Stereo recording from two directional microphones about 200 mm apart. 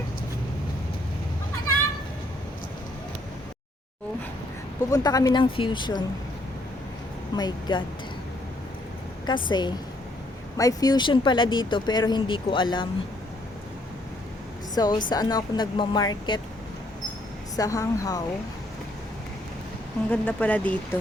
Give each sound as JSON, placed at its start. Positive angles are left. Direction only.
{"t": 4.9, "sound": "speech", "side_deg": 20}
{"t": 7.3, "sound": "speech", "side_deg": 20}
{"t": 9.5, "sound": "speech", "side_deg": 20}
{"t": 14.8, "sound": "speech", "side_deg": 20}
{"t": 17.6, "sound": "speech", "side_deg": 15}
{"t": 20.1, "sound": "speech", "side_deg": 5}